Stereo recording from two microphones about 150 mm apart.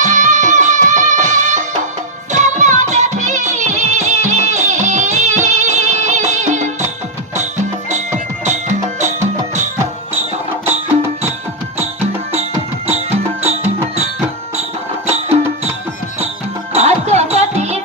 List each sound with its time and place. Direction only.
0.0 s music: 55° right (ahead or behind)
11.8 s music: 45° right (ahead or behind)
15.0 s music: 45° right (ahead or behind)
16.7 s music: 45° right (ahead or behind)